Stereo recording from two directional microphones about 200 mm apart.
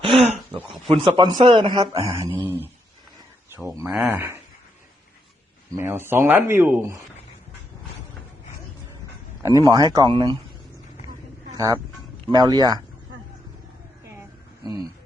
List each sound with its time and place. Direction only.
0.0 s speech: 30° right (ahead or behind)
3.8 s speech: 10° right (ahead or behind)
5.7 s speech: 10° right (ahead or behind)
9.4 s speech: 15° right (ahead or behind)
11.5 s speech: 15° right (ahead or behind)
14.2 s a sound: 20° right (ahead or behind)